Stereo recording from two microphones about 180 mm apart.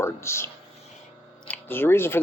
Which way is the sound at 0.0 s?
15° left (ahead or behind).